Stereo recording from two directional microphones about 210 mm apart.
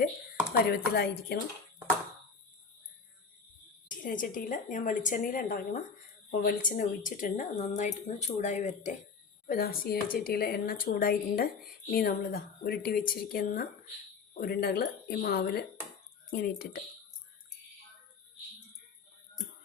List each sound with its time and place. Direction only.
0.5 s speech: 50° left (ahead or behind)
3.8 s speech: 40° left (ahead or behind)